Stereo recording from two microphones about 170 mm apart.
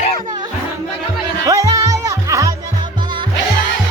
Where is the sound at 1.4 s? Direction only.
20° right (ahead or behind).